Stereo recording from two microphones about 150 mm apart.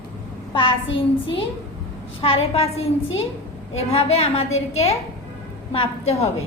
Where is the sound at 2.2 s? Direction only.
40° left (ahead or behind).